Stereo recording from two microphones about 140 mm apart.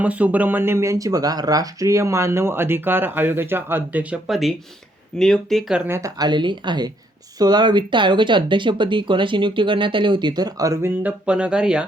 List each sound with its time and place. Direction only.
0.0 s speech: 10° right (ahead or behind)
6.0 s speech: 30° right (ahead or behind); by 11.9 s 5° right (ahead or behind)